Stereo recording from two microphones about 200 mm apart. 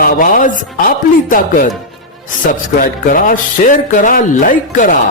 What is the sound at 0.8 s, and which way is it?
Speech, 40° left (ahead or behind).